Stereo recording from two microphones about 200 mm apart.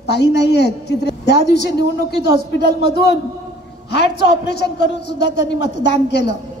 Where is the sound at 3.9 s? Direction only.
55° left (ahead or behind).